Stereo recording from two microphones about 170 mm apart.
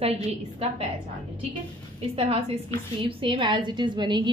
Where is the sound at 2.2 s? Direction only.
35° right (ahead or behind).